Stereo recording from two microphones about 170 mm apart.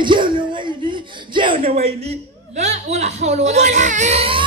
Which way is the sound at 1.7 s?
40° right (ahead or behind).